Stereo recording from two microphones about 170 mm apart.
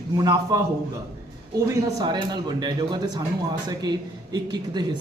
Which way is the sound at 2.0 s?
25° right (ahead or behind).